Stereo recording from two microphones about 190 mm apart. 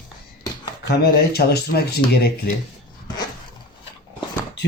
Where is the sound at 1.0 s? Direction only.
55° left (ahead or behind).